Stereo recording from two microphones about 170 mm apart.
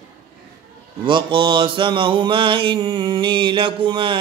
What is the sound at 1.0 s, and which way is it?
Mantra, 30° right (ahead or behind).